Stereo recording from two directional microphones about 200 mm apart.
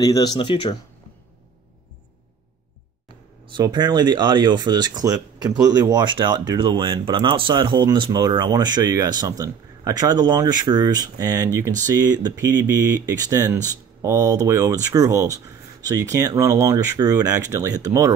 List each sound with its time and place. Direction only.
0.0 s speech: 20° left (ahead or behind)
3.4 s speech: 20° right (ahead or behind)